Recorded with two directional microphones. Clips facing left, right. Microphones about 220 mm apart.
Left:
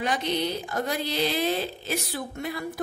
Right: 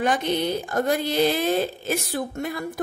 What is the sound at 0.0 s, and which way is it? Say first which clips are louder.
Speech: right 4 dB; 50° right (ahead or behind).